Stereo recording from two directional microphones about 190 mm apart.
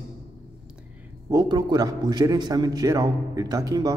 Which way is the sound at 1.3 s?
20° right (ahead or behind).